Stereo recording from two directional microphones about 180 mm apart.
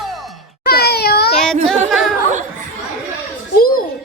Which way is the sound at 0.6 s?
60° left (ahead or behind).